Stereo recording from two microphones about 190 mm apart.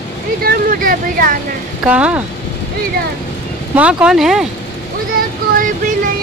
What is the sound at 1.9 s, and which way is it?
Speech, 5° right (ahead or behind).